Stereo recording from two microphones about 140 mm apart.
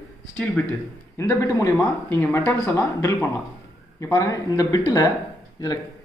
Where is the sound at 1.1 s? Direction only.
20° left (ahead or behind).